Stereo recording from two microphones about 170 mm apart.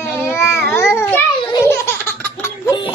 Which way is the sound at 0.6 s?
15° left (ahead or behind).